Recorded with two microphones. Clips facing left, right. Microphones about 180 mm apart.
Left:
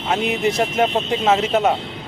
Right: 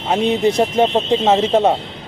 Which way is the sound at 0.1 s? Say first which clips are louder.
Right 4 dB; 30° right (ahead or behind).